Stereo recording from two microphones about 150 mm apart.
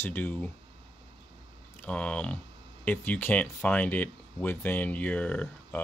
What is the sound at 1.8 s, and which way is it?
Speech, 10° left (ahead or behind).